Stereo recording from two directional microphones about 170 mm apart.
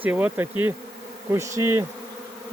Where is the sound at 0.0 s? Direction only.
10° right (ahead or behind).